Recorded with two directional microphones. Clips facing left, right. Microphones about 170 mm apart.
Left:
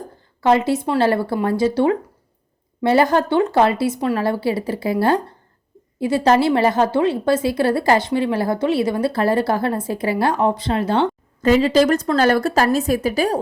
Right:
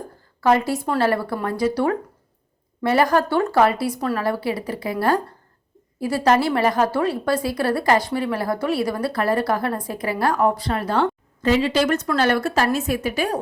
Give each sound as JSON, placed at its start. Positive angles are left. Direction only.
{"t": 0.4, "sound": "a woman's voice", "side_deg": 25}
{"t": 11.4, "sound": "a woman's voice", "side_deg": 40}